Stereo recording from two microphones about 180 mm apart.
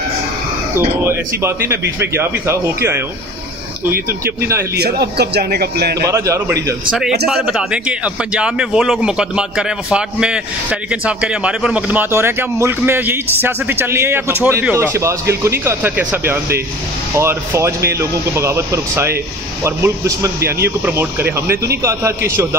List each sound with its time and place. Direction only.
0.7 s speech: 15° right (ahead or behind)
4.2 s speech: 15° right (ahead or behind)
4.7 s a man's voice: 60° right (ahead or behind)
6.0 s speech: 15° right (ahead or behind)
7.2 s a man's voice: 5° right (ahead or behind)